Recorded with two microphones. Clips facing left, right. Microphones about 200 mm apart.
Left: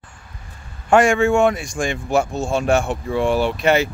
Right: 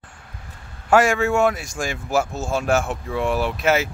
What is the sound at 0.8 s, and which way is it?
Speech, 5° right (ahead or behind).